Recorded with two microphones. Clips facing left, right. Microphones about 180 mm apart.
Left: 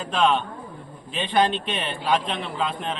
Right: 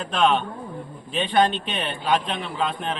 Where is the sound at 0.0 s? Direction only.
Centre (ahead or behind).